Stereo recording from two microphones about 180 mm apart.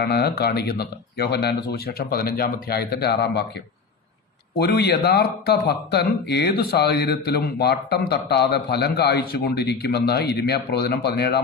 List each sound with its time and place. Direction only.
0.0 s speech: 65° left (ahead or behind)